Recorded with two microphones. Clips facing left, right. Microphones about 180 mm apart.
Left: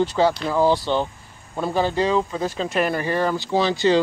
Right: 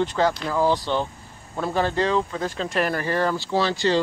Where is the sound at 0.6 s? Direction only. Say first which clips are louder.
Left 2 dB; 30° left (ahead or behind).